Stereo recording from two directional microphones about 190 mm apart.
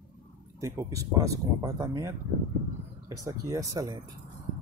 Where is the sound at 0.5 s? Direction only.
15° right (ahead or behind).